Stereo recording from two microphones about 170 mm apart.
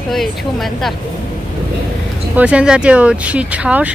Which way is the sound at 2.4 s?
5° right (ahead or behind).